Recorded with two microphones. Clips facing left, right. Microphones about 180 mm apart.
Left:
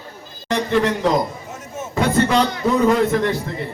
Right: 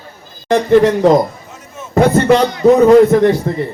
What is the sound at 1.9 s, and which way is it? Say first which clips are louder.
A man's voice: right 7 dB; 55° right (ahead or behind).